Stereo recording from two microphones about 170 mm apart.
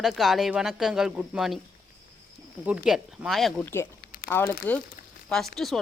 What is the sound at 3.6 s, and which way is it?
Speech, 15° left (ahead or behind).